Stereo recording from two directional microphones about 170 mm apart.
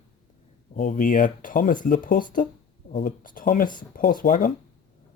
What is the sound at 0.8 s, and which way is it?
Speech, 50° left (ahead or behind).